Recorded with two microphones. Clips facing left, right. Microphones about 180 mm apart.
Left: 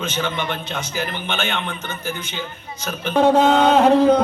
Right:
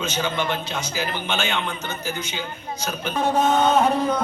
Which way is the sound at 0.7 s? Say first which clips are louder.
Left 1 dB; 55° left (ahead or behind).